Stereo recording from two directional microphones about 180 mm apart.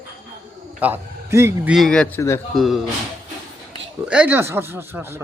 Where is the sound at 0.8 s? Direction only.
10° right (ahead or behind).